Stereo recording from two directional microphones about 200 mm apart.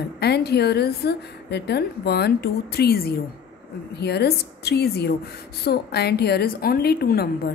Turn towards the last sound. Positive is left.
turn(degrees=50)  # may be behind; listen again after turning